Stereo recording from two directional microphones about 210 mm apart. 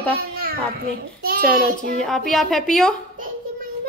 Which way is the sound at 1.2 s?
45° right (ahead or behind).